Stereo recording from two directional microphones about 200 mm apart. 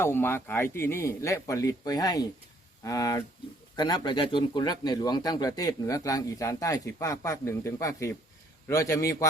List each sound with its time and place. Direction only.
0.0 s speech: 10° left (ahead or behind)